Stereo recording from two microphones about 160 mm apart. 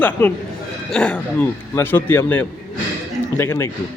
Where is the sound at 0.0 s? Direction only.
10° left (ahead or behind).